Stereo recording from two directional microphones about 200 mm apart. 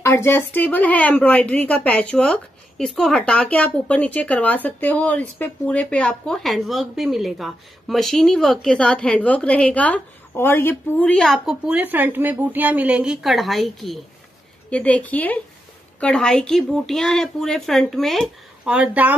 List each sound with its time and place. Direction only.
0.0 s a woman's voice: 15° left (ahead or behind); by 19.1 s 5° right (ahead or behind)